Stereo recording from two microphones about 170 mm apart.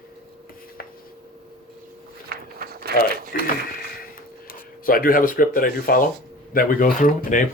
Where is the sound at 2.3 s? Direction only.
65° right (ahead or behind).